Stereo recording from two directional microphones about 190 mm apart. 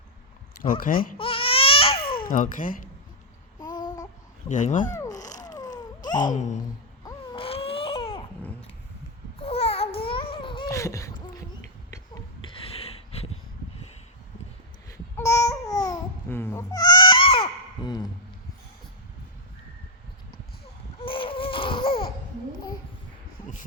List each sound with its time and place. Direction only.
0.6 s speech: 45° left (ahead or behind)
1.2 s baby cry: 30° left (ahead or behind)
2.2 s speech: 45° left (ahead or behind)
3.6 s babbling: 20° left (ahead or behind)
4.4 s speech: 40° left (ahead or behind)
4.9 s music: 15° left (ahead or behind)
6.3 s speech: 40° left (ahead or behind)
7.0 s baby cry: 30° left (ahead or behind)
9.4 s babbling: 30° left (ahead or behind)
11.9 s a sound: 20° left (ahead or behind)
14.8 s babbling: 15° left (ahead or behind)
21.0 s baby cry: 30° left (ahead or behind)